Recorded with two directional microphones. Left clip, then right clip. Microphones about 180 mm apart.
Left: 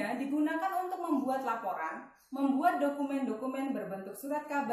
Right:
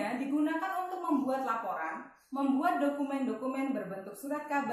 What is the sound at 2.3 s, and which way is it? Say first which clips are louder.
A man's voice: left 1 dB; 20° left (ahead or behind).